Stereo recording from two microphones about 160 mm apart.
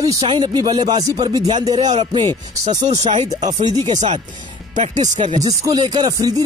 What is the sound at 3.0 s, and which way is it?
Speech, 45° right (ahead or behind).